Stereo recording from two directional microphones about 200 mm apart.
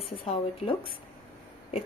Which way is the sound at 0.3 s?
30° left (ahead or behind).